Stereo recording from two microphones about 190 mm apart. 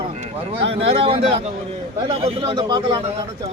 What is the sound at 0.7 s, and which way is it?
Speech, 30° right (ahead or behind).